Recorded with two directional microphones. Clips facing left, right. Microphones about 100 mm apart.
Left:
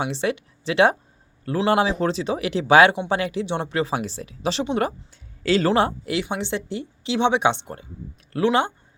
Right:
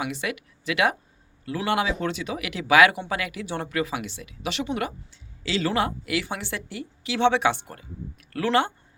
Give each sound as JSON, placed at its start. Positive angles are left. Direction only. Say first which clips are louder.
{"t": 0.0, "sound": "speech", "louder": "left 5 dB", "side_deg": 30}
{"t": 5.1, "sound": "a sound", "louder": "left 8 dB", "side_deg": 50}
{"t": 5.7, "sound": "speech", "louder": "left 4 dB", "side_deg": 30}